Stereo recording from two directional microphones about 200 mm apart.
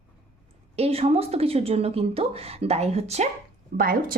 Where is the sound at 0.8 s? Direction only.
30° right (ahead or behind).